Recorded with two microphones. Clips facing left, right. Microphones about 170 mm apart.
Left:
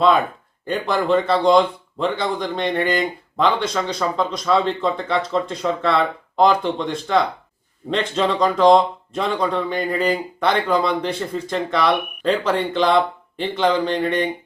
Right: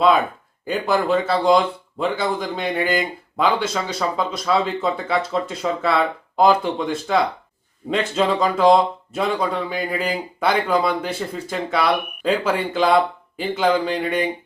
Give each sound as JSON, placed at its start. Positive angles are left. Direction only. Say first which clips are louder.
{"t": 0.6, "sound": "speech", "louder": "right 1 dB", "side_deg": -5}